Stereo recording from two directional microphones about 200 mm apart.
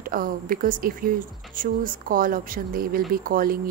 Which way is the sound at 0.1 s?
45° right (ahead or behind).